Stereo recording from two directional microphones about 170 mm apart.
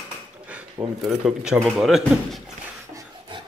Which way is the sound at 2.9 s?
25° right (ahead or behind).